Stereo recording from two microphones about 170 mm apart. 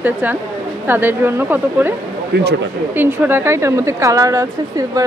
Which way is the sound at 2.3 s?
80° right.